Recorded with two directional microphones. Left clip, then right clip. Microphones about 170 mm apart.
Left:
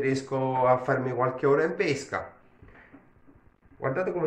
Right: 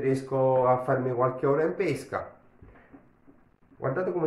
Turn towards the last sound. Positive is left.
turn(degrees=-25)  # may be behind; listen again after turning